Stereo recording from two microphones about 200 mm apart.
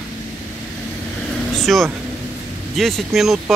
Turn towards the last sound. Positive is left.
turn(degrees=0)  # may be behind; listen again after turning